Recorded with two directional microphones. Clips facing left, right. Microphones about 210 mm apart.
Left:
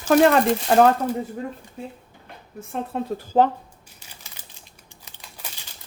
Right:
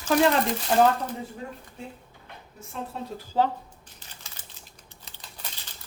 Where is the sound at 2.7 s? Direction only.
55° left (ahead or behind).